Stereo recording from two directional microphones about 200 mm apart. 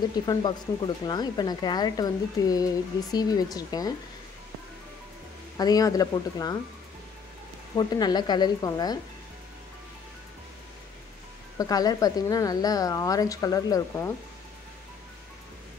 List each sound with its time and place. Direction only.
0.1 s speech: 20° left (ahead or behind)
5.6 s speech: 20° left (ahead or behind)
7.7 s speech: 20° left (ahead or behind)
11.5 s a woman's voice: 20° left (ahead or behind)